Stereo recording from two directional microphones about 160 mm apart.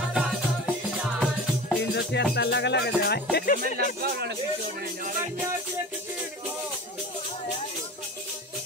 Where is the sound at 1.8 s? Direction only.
90° left; by 3.6 s 65° left (ahead or behind).